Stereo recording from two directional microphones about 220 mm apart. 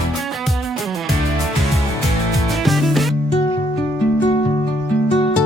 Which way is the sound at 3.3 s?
20° left (ahead or behind).